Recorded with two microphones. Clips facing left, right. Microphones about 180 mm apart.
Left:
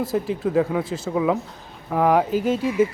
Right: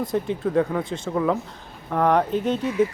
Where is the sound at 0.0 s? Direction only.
5° left (ahead or behind).